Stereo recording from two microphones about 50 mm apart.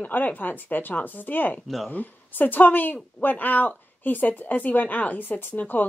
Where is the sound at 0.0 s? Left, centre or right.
Left.